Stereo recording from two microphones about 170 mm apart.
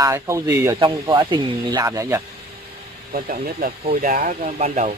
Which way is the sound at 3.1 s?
50° right (ahead or behind).